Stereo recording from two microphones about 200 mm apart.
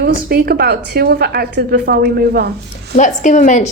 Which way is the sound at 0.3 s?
50° right (ahead or behind).